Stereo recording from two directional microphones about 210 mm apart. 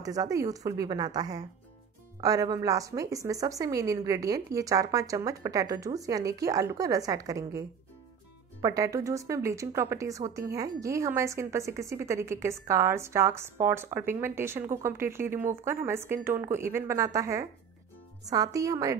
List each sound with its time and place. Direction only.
0.0 s speech: 15° right (ahead or behind)